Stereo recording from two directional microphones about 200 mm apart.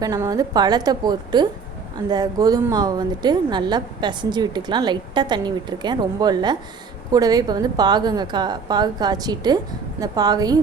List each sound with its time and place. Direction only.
0.0 s a woman's voice: 20° right (ahead or behind)